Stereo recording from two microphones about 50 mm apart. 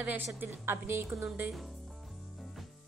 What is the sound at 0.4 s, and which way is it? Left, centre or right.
Speech, right.